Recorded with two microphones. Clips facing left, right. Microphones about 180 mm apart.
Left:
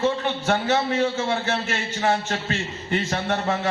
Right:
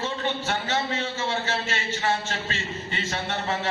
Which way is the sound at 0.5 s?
55° left (ahead or behind).